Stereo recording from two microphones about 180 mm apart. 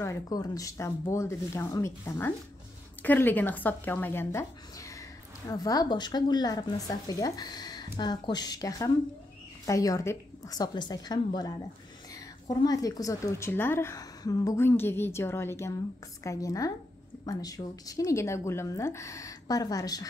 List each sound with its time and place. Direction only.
0.0 s a woman's voice: 20° left (ahead or behind)